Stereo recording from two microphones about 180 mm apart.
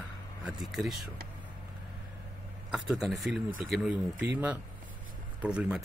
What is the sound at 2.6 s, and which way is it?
A man's voice, centre (ahead or behind).